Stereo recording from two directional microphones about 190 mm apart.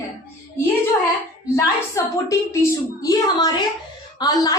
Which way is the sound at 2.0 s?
15° left (ahead or behind).